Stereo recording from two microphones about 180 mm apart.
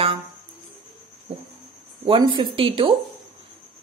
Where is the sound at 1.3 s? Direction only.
30° right (ahead or behind).